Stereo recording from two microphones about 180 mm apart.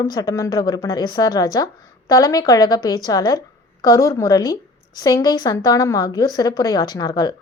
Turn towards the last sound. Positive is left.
turn(degrees=20)  # may be behind; listen again after turning